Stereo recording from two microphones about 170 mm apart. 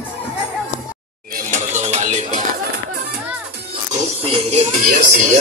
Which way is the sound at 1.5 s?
45° right (ahead or behind).